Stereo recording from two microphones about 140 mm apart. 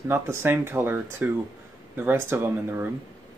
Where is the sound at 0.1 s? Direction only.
15° right (ahead or behind).